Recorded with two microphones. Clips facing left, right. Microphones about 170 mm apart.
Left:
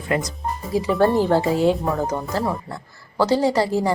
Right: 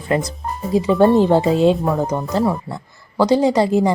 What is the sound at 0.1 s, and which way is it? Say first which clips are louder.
Speech: right 3 dB; 30° right (ahead or behind).